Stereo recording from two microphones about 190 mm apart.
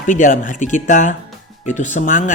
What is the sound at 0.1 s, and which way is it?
Speech, 45° left (ahead or behind).